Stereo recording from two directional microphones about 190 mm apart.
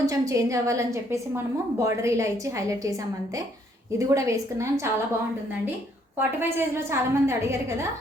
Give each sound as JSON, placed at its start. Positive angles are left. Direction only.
{"t": 0.0, "sound": "a woman's voice", "side_deg": -15}
{"t": 3.9, "sound": "a woman's voice", "side_deg": -15}
{"t": 6.1, "sound": "a woman's voice", "side_deg": -10}